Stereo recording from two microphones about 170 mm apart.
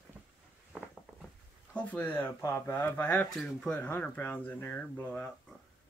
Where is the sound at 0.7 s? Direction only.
5° left (ahead or behind).